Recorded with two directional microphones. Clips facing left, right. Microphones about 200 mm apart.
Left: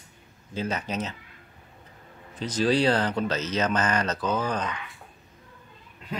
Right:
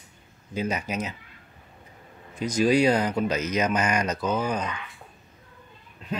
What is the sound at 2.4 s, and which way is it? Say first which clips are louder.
Speech: right 3 dB; 10° right (ahead or behind).